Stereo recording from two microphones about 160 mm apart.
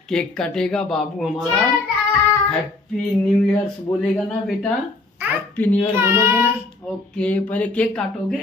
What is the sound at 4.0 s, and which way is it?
Speech, 5° left (ahead or behind).